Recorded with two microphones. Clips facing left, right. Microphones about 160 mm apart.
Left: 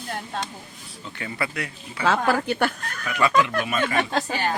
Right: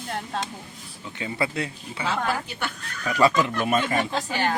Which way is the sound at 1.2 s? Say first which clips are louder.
Right 3 dB; 25° right (ahead or behind).